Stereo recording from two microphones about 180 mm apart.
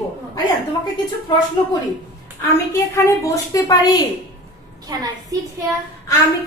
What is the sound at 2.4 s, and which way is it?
Speech, 15° left (ahead or behind).